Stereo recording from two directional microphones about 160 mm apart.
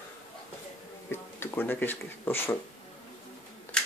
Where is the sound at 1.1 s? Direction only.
15° left (ahead or behind).